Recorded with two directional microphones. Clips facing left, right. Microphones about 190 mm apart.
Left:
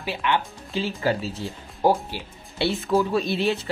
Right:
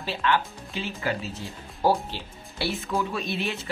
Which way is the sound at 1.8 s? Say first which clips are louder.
Left 2 dB; 15° left (ahead or behind).